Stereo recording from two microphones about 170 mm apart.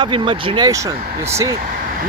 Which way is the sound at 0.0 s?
30° right (ahead or behind).